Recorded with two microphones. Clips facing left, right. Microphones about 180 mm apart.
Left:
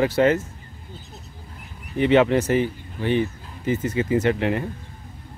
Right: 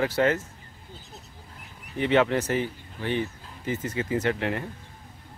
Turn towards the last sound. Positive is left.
turn(degrees=20)  # may be behind; listen again after turning